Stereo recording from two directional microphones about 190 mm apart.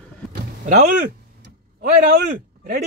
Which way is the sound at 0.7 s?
40° right (ahead or behind).